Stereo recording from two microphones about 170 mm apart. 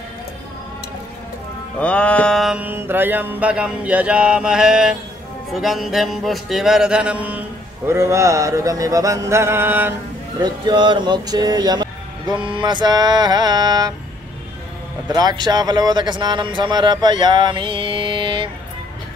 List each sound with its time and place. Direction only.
1.8 s mantra: 5° left (ahead or behind); by 9.9 s 10° right (ahead or behind)
10.4 s speech: 25° right (ahead or behind)
15.1 s speech: 25° right (ahead or behind)